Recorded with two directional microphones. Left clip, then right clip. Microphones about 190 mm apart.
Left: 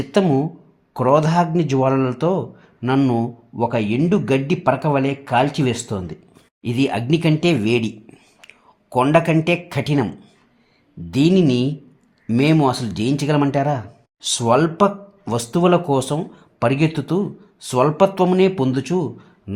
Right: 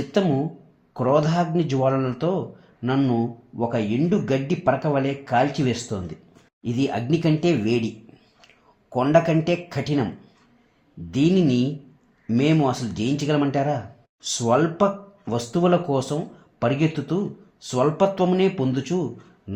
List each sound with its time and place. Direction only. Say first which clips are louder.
0.1 s speech: left 5 dB; 40° left (ahead or behind)
8.9 s speech: left 3 dB; 45° left (ahead or behind)
11.1 s speech: left 4 dB; 45° left (ahead or behind)
19.5 s a sound: left 4 dB; 40° left (ahead or behind)